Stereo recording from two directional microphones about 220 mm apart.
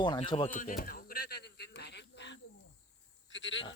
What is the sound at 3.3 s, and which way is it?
Sheep, 55° left (ahead or behind).